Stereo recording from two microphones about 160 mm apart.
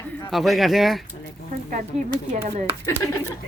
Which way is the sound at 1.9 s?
40° right (ahead or behind).